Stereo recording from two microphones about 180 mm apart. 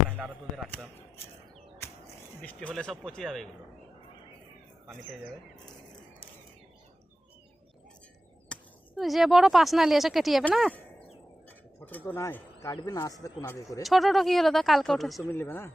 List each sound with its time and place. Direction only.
0.2 s speech: 5° right (ahead or behind)
2.4 s speech: 5° left (ahead or behind)
8.5 s a sound: 5° left (ahead or behind)
9.0 s speech: centre (ahead or behind); by 13.8 s 15° left (ahead or behind)
13.8 s speech: centre (ahead or behind)
15.2 s speech: 10° left (ahead or behind)